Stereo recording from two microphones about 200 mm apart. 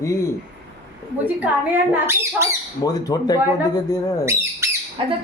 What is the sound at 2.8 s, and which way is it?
Speech, 20° left (ahead or behind).